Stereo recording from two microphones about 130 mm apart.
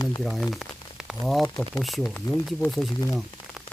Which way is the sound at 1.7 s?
Centre (ahead or behind).